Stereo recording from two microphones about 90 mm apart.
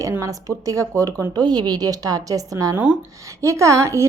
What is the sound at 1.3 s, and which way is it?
A woman's voice, 50° right (ahead or behind).